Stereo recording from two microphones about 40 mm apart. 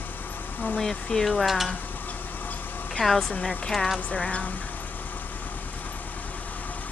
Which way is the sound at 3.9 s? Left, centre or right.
Left.